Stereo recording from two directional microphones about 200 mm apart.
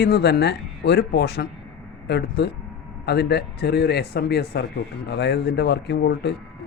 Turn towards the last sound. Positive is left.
turn(degrees=55)  # may be behind; listen again after turning